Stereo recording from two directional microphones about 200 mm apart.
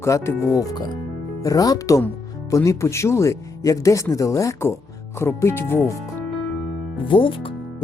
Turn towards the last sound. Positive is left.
turn(degrees=25)  # may be behind; listen again after turning